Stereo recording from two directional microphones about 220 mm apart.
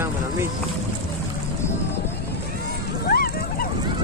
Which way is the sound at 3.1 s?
40° left (ahead or behind).